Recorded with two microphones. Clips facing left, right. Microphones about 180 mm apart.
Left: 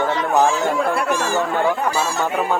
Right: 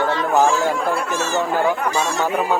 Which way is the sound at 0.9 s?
65° left (ahead or behind).